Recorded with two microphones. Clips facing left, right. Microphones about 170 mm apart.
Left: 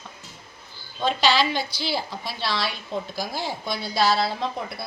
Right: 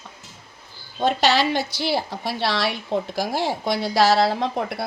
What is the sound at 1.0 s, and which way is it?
A woman's voice, 65° right (ahead or behind).